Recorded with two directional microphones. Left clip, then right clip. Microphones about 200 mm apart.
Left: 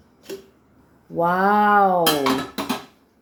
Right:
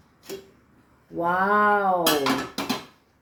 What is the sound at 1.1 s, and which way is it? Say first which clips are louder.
Speech: left 3 dB; 60° left (ahead or behind).